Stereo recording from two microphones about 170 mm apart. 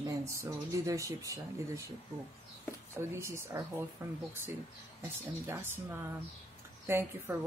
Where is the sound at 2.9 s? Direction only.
15° right (ahead or behind).